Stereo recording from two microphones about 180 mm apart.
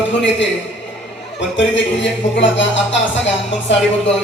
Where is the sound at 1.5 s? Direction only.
90° left.